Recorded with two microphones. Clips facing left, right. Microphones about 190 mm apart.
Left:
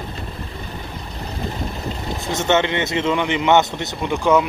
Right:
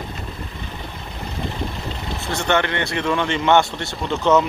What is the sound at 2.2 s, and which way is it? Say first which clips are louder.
Speech: left 2 dB; 20° left (ahead or behind).